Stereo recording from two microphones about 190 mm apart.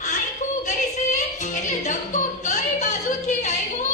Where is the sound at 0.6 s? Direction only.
40° left (ahead or behind).